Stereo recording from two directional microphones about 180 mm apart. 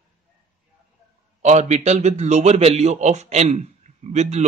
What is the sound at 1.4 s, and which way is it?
A man's voice, 40° right (ahead or behind).